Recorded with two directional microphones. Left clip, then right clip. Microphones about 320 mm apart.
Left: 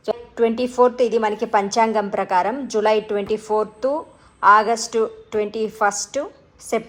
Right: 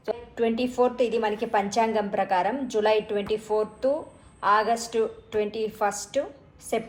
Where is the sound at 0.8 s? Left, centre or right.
Left.